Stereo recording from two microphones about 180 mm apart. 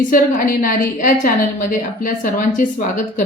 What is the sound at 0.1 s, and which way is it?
Speech, 50° left (ahead or behind).